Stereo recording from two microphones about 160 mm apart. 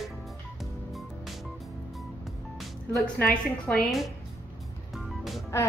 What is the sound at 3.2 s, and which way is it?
Speech, 5° left (ahead or behind).